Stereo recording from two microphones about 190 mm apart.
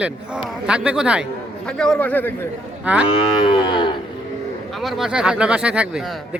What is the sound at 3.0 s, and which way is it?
Cattle, 25° left (ahead or behind).